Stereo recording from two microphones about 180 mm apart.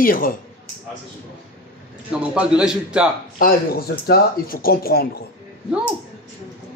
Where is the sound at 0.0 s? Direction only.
50° left (ahead or behind).